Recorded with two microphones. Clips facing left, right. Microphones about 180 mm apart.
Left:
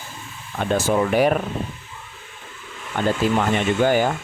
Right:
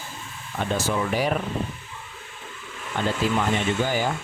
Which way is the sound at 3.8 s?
55° left (ahead or behind).